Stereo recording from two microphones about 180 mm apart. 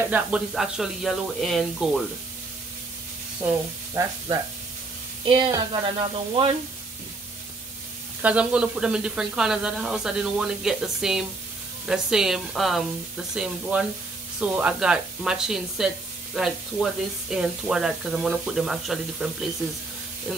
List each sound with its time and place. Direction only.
0.1 s speech: 5° right (ahead or behind)
3.4 s speech: 15° right (ahead or behind)
5.2 s speech: 25° right (ahead or behind)
8.2 s speech: 5° right (ahead or behind)
17.3 s speech: 5° right (ahead or behind)